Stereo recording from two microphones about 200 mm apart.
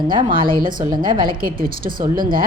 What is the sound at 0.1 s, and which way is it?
A woman's voice, 25° right (ahead or behind).